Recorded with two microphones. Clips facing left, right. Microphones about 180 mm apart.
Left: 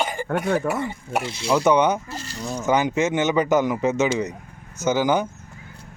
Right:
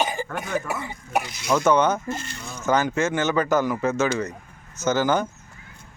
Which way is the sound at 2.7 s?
15° left (ahead or behind).